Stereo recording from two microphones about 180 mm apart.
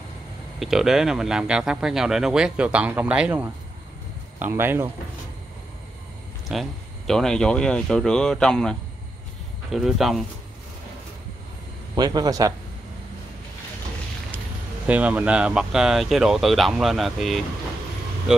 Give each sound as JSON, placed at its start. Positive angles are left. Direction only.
{"t": 0.6, "sound": "speech", "side_deg": 0}
{"t": 6.5, "sound": "speech", "side_deg": 0}
{"t": 11.9, "sound": "speech", "side_deg": -20}
{"t": 14.9, "sound": "speech", "side_deg": -5}